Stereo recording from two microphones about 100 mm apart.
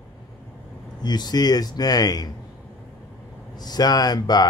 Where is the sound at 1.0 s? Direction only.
45° left (ahead or behind).